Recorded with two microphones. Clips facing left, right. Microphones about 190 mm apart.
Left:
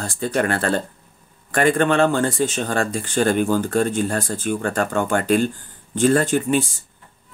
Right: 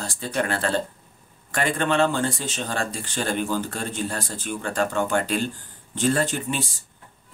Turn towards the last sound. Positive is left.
turn(degrees=50)  # may be behind; listen again after turning